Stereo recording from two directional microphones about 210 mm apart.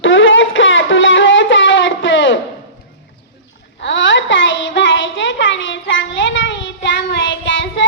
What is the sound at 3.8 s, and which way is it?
Child singing, 60° left (ahead or behind).